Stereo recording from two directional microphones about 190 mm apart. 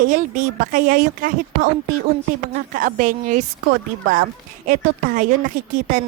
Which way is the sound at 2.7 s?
45° right (ahead or behind).